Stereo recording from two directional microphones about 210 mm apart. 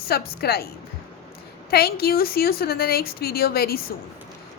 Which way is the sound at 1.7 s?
45° left (ahead or behind).